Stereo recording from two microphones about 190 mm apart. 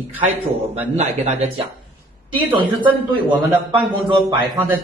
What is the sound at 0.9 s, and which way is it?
Speech, 35° right (ahead or behind).